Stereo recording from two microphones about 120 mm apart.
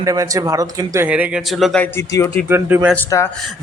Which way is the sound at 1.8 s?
20° left (ahead or behind).